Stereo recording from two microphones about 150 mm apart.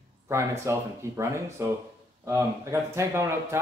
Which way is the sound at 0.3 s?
20° right (ahead or behind).